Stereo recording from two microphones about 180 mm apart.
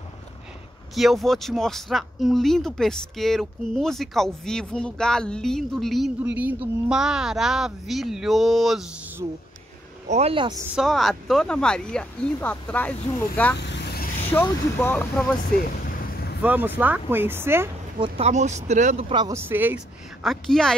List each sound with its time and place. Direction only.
0.9 s speech: centre (ahead or behind)
10.0 s speech: 35° right (ahead or behind)
10.7 s speech: centre (ahead or behind)
13.6 s vehicle: 75° left (ahead or behind)
14.4 s speech: 10° left (ahead or behind)
15.8 s vehicle: 55° left (ahead or behind)
16.4 s speech: 10° right (ahead or behind)
17.9 s speech: 30° right (ahead or behind)
19.2 s speech: 15° right (ahead or behind)
20.2 s speech: centre (ahead or behind)